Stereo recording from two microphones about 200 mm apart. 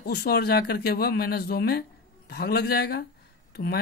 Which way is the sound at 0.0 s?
50° left (ahead or behind).